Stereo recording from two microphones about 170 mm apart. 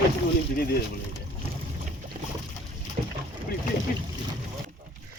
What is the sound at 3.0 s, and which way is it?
Boat, 55° right (ahead or behind).